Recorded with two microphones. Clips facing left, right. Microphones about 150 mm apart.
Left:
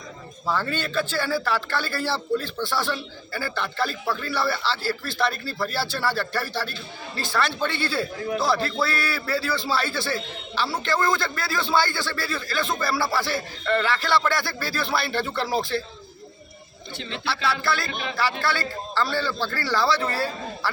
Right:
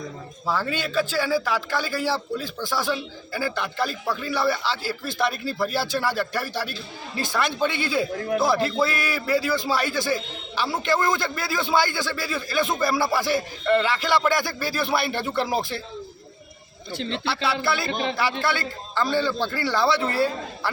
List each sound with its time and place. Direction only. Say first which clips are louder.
0.4 s a man's voice: even; 10° right (ahead or behind)
17.2 s a man's voice: left 1 dB; 25° right (ahead or behind)